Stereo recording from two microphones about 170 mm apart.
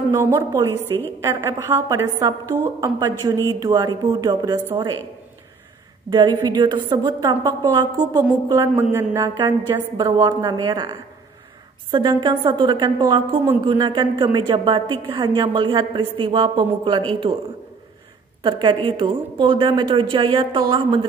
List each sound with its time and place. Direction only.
0.1 s a woman's voice: 20° right (ahead or behind)
6.0 s a woman's voice: 25° right (ahead or behind)
18.4 s a woman's voice: 30° right (ahead or behind)